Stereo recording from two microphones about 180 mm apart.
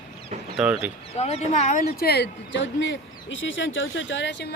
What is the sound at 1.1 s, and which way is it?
Speech, 35° left (ahead or behind).